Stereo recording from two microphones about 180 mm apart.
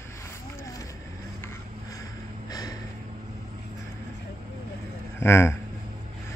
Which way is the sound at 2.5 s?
20° left (ahead or behind).